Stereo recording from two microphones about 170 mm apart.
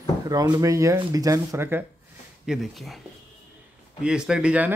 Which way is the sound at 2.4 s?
Centre (ahead or behind).